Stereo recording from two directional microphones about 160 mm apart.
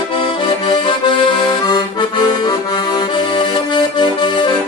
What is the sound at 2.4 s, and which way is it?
Accordion, 25° left (ahead or behind).